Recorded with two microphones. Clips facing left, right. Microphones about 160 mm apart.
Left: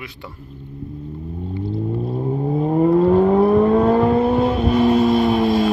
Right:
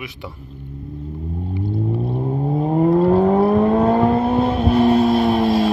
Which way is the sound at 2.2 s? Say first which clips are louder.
Left 1 dB; 10° right (ahead or behind).